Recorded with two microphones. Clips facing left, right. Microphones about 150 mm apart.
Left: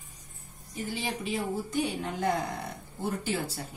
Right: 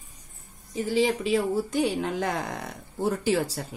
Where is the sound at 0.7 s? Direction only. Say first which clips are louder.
Right 10 dB; 90° right.